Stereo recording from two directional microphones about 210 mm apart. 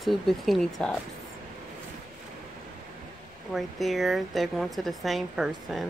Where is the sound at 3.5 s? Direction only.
Centre (ahead or behind).